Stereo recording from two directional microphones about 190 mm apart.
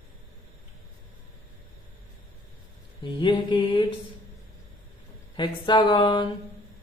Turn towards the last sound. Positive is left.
turn(degrees=25)  # may be behind; listen again after turning